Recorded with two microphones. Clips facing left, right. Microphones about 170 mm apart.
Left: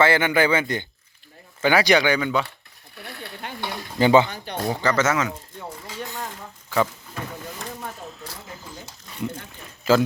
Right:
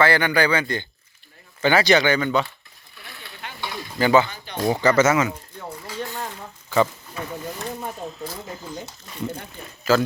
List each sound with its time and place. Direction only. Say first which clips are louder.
0.0 s speech: even; 20° left (ahead or behind); by 2.5 s 5° left (ahead or behind)
2.9 s stir: left 6 dB; 55° left (ahead or behind)
3.9 s speech: left 1 dB; 20° left (ahead or behind)
4.3 s a sound: left 2 dB; 60° left (ahead or behind)
4.7 s speech: right 4 dB; 10° right (ahead or behind)
6.7 s a sound: right 3 dB; centre (ahead or behind)
9.9 s a man's voice: left 1 dB; 25° left (ahead or behind)